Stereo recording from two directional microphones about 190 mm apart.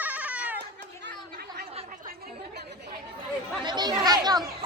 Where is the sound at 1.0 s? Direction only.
55° right (ahead or behind).